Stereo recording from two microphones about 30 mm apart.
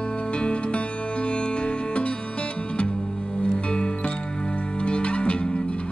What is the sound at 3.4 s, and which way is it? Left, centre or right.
Music, left.